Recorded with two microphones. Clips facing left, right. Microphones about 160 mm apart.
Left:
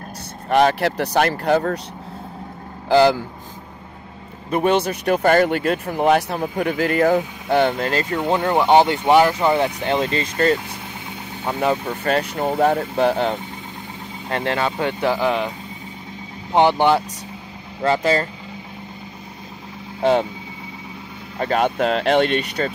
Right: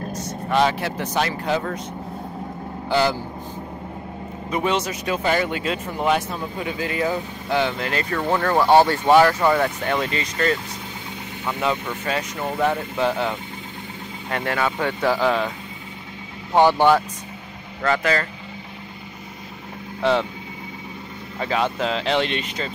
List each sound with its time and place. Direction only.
0.1 s vehicle: 30° left (ahead or behind)
1.4 s speech: 50° left (ahead or behind)
4.5 s speech: 55° left (ahead or behind)
6.1 s speech: 65° left (ahead or behind)
7.9 s speech: 30° left (ahead or behind)
8.2 s speech: 20° left (ahead or behind); by 11.9 s 35° left (ahead or behind)
12.0 s speech: 55° left (ahead or behind)
12.5 s speech: 40° left (ahead or behind)
14.3 s speech: 30° left (ahead or behind)
16.5 s speech: 20° left (ahead or behind)
17.8 s speech: 30° left (ahead or behind)
20.0 s speech: 45° left (ahead or behind)
21.4 s speech: 50° left (ahead or behind)